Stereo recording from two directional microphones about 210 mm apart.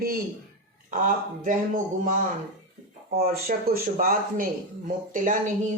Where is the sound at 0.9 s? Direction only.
40° right (ahead or behind).